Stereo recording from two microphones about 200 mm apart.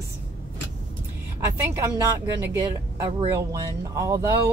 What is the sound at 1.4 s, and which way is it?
Speech, 15° right (ahead or behind).